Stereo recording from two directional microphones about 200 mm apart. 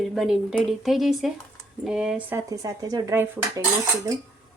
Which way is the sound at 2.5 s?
15° right (ahead or behind).